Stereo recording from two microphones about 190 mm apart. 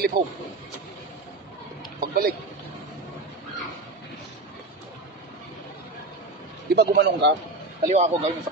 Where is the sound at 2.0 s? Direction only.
50° right (ahead or behind).